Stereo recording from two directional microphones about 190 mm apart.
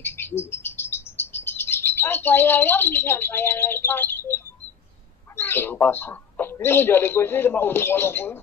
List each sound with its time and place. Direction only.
0.0 s chirp: 10° left (ahead or behind)
5.4 s a man's voice: 10° left (ahead or behind)